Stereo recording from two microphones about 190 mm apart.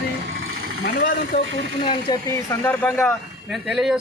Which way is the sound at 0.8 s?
55° left (ahead or behind).